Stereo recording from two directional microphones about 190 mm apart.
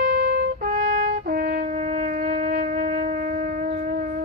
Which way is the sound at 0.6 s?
40° right (ahead or behind).